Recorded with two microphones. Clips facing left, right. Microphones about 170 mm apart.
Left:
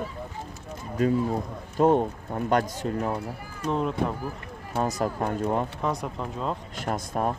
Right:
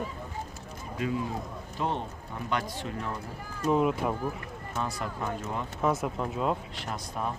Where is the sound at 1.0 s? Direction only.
40° left (ahead or behind).